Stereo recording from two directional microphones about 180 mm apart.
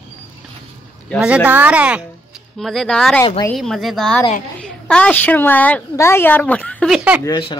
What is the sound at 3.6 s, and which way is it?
A woman's voice, centre (ahead or behind).